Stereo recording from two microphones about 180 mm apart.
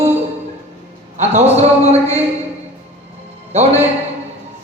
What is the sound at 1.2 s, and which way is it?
Speech, 35° right (ahead or behind).